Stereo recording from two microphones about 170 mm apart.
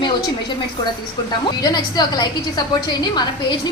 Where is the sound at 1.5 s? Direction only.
25° left (ahead or behind).